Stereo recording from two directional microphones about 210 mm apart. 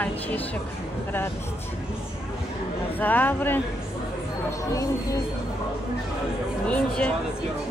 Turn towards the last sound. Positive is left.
turn(degrees=5)  # may be behind; listen again after turning